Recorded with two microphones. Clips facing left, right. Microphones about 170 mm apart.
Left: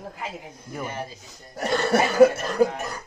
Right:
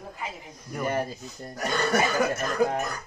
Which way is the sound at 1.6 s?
30° left (ahead or behind).